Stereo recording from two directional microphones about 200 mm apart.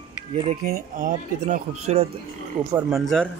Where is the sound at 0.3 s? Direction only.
30° right (ahead or behind).